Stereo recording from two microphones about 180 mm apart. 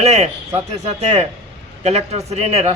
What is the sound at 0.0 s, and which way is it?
A man's voice, 40° right (ahead or behind).